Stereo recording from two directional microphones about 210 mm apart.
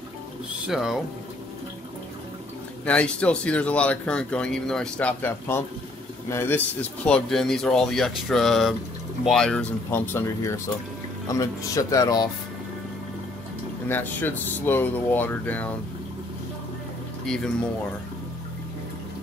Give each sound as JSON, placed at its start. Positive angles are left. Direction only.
{"t": 0.7, "sound": "speech", "side_deg": 0}
{"t": 2.8, "sound": "speech", "side_deg": 5}
{"t": 13.8, "sound": "speech", "side_deg": 10}